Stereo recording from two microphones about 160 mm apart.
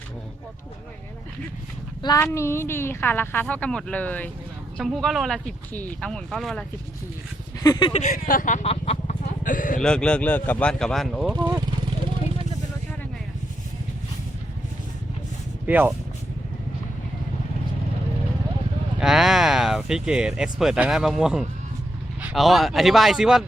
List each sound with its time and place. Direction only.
2.0 s a woman's voice: 25° left (ahead or behind); by 6.7 s centre (ahead or behind)
7.6 s speech: 25° left (ahead or behind)
7.9 s speech: 55° left (ahead or behind)
9.8 s speech: 5° left (ahead or behind)
15.6 s speech: 10° right (ahead or behind)
18.9 s speech: centre (ahead or behind)